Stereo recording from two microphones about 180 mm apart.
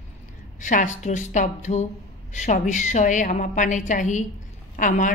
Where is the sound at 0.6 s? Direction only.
45° left (ahead or behind).